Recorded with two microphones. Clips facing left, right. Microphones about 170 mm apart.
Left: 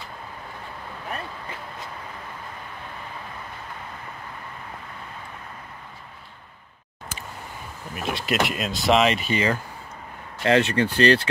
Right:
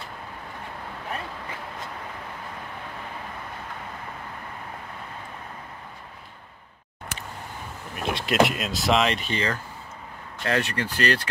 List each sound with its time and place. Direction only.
7.9 s speech: centre (ahead or behind)
10.4 s speech: 25° left (ahead or behind)